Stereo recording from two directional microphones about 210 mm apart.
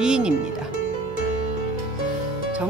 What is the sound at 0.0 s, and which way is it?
Music, 5° right (ahead or behind).